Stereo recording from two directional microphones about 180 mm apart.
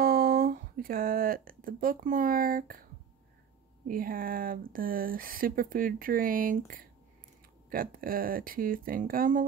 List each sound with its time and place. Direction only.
0.0 s speech: 55° right (ahead or behind)
7.7 s speech: 55° right (ahead or behind)